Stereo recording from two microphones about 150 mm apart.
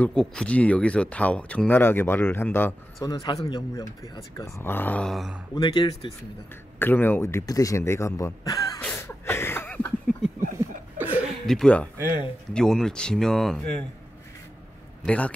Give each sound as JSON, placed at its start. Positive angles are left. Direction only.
{"t": 0.0, "sound": "speech", "side_deg": 5}
{"t": 3.1, "sound": "speech", "side_deg": 30}
{"t": 5.5, "sound": "speech", "side_deg": 30}
{"t": 6.8, "sound": "speech", "side_deg": 15}
{"t": 8.9, "sound": "a sound", "side_deg": 15}
{"t": 11.0, "sound": "chuckle", "side_deg": -10}
{"t": 11.4, "sound": "speech", "side_deg": 5}
{"t": 12.0, "sound": "speech", "side_deg": -15}
{"t": 12.5, "sound": "speech", "side_deg": 5}
{"t": 15.0, "sound": "speech", "side_deg": 10}